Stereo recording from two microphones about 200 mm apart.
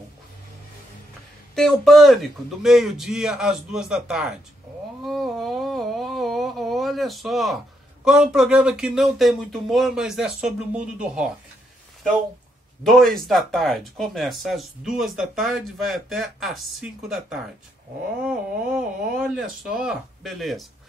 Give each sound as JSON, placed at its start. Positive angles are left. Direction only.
{"t": 1.5, "sound": "speech", "side_deg": 0}
{"t": 5.0, "sound": "a sound", "side_deg": 0}
{"t": 8.0, "sound": "speech", "side_deg": -5}
{"t": 12.8, "sound": "speech", "side_deg": 0}